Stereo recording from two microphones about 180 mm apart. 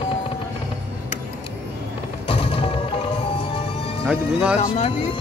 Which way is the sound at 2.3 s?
30° left (ahead or behind).